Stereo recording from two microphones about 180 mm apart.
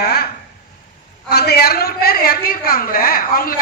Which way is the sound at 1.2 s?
60° left (ahead or behind).